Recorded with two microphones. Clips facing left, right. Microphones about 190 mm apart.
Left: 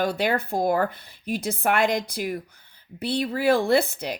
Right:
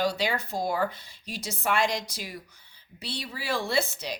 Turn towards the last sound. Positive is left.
turn(degrees=55)  # may be behind; listen again after turning